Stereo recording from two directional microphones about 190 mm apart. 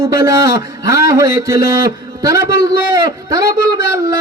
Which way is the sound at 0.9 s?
20° right (ahead or behind).